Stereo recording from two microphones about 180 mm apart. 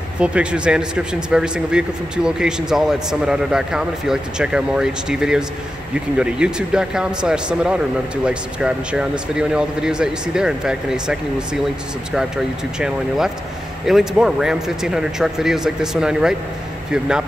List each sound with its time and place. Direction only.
0.2 s speech: 5° right (ahead or behind)